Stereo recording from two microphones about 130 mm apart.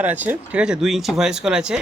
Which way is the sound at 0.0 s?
15° right (ahead or behind).